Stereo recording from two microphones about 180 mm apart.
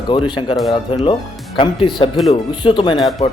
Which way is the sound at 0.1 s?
25° left (ahead or behind).